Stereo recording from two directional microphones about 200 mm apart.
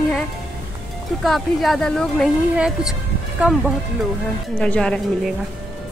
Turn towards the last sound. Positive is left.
turn(degrees=5)  # may be behind; listen again after turning